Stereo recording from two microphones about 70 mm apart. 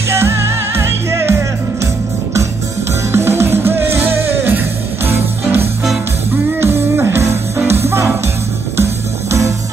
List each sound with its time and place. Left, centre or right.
0.2 s music: right
3.1 s music: right